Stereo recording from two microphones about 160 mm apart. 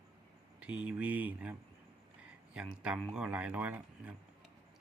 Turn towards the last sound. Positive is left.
turn(degrees=-10)  # may be behind; listen again after turning